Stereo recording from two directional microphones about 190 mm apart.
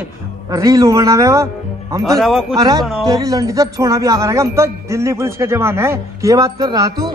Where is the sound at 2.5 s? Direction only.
20° right (ahead or behind).